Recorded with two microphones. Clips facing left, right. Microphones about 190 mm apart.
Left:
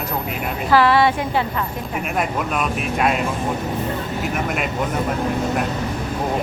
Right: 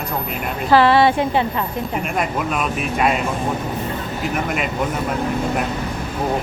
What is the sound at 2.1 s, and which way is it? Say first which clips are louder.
Speech: left 1 dB; centre (ahead or behind).